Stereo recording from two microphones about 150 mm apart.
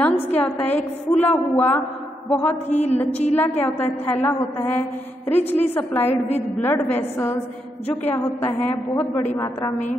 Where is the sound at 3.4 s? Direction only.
15° left (ahead or behind).